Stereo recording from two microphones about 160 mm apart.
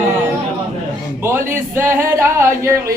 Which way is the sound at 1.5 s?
15° right (ahead or behind).